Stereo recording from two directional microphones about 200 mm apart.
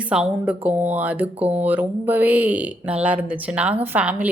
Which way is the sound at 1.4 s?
30° right (ahead or behind).